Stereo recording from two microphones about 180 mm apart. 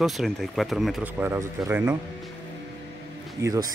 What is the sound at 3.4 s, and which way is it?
Speech, 20° right (ahead or behind).